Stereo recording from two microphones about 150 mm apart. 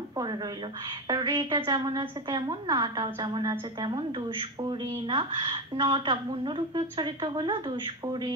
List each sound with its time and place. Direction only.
1.0 s a woman's voice: 25° right (ahead or behind)